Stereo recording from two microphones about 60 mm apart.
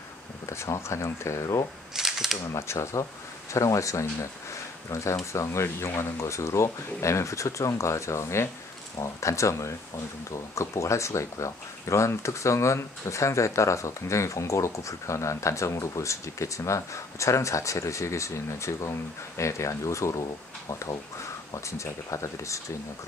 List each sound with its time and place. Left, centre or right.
0.5 s speech: left
2.0 s camera: centre
2.7 s speech: left
21.5 s speech: left